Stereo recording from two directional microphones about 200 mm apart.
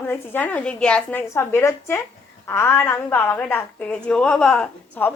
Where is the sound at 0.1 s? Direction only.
10° left (ahead or behind).